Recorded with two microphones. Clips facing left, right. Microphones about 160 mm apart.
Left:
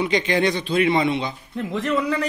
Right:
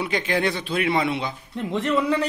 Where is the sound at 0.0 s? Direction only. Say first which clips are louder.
Left 3 dB; 5° right (ahead or behind).